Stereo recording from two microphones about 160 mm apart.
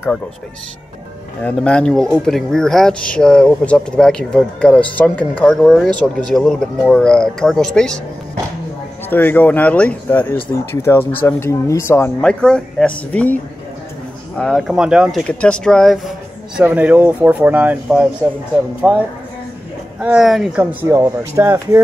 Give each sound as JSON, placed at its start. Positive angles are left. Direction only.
{"t": 1.4, "sound": "speech", "side_deg": 5}
{"t": 9.1, "sound": "speech", "side_deg": 10}
{"t": 12.2, "sound": "speech", "side_deg": 5}
{"t": 16.5, "sound": "speech", "side_deg": -10}
{"t": 20.8, "sound": "speech", "side_deg": -20}